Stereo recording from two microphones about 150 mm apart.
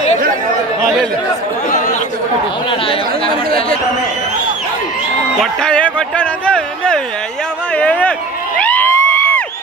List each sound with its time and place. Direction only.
2.7 s speech: 35° left (ahead or behind)
5.4 s speech: 5° left (ahead or behind)
8.5 s crowd: 10° left (ahead or behind)